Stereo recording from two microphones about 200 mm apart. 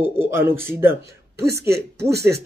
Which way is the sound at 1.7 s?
55° right (ahead or behind).